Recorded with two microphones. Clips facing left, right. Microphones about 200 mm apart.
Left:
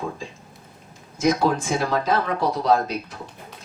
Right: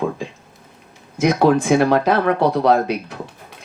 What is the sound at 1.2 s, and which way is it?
Speech, 65° right (ahead or behind).